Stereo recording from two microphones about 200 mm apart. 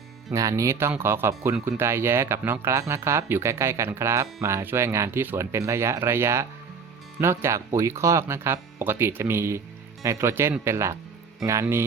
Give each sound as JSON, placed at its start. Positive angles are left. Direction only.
{"t": 0.3, "sound": "speech", "side_deg": -15}